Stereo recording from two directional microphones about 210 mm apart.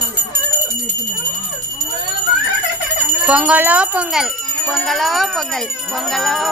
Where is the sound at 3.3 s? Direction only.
5° right (ahead or behind).